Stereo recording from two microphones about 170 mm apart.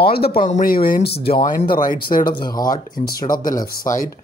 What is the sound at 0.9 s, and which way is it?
Speech, 70° left (ahead or behind).